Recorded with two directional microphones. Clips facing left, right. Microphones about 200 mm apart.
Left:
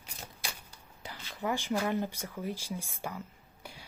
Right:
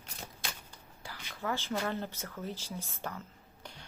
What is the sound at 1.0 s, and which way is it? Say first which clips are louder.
Speech: left 3 dB; 20° left (ahead or behind).